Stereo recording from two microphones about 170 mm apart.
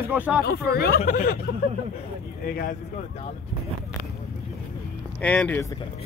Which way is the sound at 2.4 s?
60° left (ahead or behind).